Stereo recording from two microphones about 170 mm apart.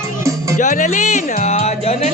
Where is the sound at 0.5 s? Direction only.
50° left (ahead or behind).